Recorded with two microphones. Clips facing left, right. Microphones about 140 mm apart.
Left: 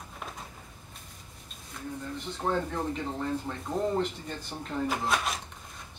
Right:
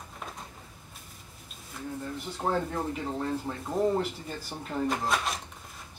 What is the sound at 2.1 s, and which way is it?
Speech, 10° right (ahead or behind).